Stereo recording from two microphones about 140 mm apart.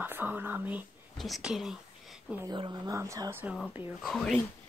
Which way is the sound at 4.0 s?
Centre (ahead or behind).